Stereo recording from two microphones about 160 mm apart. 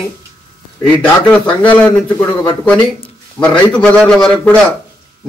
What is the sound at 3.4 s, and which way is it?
A man's voice, 10° left (ahead or behind).